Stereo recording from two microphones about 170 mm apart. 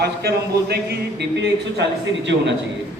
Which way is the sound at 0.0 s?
70° right (ahead or behind).